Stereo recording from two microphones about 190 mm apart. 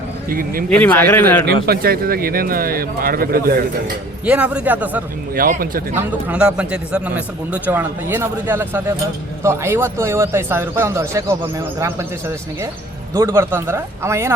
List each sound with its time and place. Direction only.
0.3 s speech: 50° right (ahead or behind)
0.7 s speech: 10° left (ahead or behind)
1.6 s speech: 55° right (ahead or behind)
4.3 s speech: 5° right (ahead or behind)
5.3 s speech: 50° right (ahead or behind)
6.2 s speech: 5° right (ahead or behind)
13.1 s speech: 15° right (ahead or behind)